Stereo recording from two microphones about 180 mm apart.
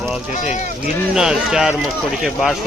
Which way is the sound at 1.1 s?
5° right (ahead or behind).